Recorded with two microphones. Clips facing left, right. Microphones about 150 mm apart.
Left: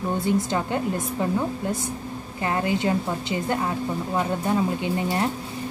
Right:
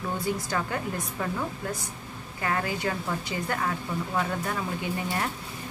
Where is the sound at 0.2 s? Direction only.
25° left (ahead or behind).